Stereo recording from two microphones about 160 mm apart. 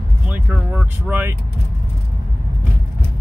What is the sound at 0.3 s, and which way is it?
Speech, 10° right (ahead or behind).